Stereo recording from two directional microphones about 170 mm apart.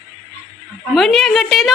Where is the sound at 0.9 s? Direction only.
Centre (ahead or behind).